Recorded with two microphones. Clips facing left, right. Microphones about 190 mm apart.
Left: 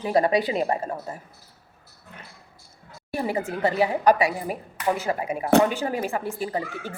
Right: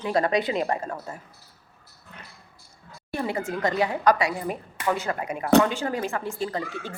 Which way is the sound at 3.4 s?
35° left (ahead or behind).